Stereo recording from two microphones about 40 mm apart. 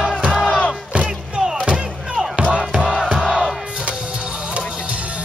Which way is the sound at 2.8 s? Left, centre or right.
Centre.